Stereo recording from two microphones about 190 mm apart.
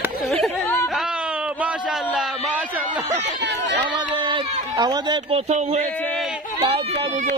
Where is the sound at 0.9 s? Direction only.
5° right (ahead or behind).